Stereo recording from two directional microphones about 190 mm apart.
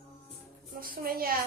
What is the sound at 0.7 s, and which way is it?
Speech, 50° right (ahead or behind).